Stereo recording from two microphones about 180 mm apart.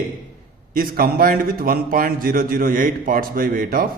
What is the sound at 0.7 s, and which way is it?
A man's voice, 55° right (ahead or behind).